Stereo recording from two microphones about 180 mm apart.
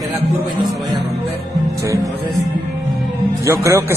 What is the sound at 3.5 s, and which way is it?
Speech, 15° right (ahead or behind).